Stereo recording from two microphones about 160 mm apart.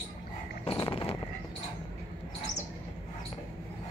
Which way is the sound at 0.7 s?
35° left (ahead or behind).